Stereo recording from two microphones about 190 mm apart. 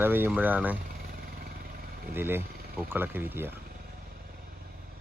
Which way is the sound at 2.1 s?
10° right (ahead or behind).